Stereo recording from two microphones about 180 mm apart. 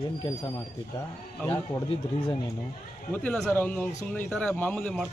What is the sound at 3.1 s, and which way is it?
A man's voice, 10° left (ahead or behind).